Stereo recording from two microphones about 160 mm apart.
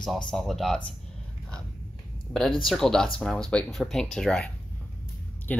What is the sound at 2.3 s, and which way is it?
Speech, centre (ahead or behind).